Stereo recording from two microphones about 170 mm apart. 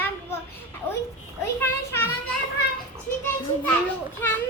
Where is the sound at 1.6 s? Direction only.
15° left (ahead or behind).